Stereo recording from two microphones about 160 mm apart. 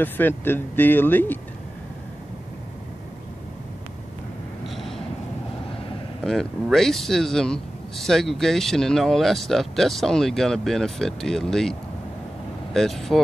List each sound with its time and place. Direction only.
0.0 s speech: 10° left (ahead or behind)
4.6 s a sound: centre (ahead or behind)
6.2 s speech: 5° left (ahead or behind)
12.7 s speech: centre (ahead or behind)